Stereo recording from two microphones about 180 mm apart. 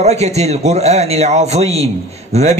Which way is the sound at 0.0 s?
35° right (ahead or behind).